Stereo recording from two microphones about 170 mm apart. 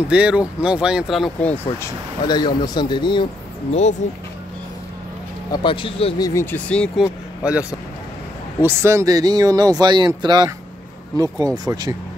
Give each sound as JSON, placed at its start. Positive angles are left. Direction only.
{"t": 0.1, "sound": "speech", "side_deg": -5}
{"t": 1.5, "sound": "speech", "side_deg": 15}
{"t": 4.0, "sound": "speech", "side_deg": 45}
{"t": 5.5, "sound": "speech", "side_deg": 30}
{"t": 6.2, "sound": "speech", "side_deg": 15}
{"t": 7.4, "sound": "speech", "side_deg": -5}
{"t": 8.6, "sound": "speech", "side_deg": -15}